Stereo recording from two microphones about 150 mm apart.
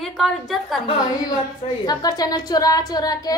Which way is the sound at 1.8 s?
25° left (ahead or behind).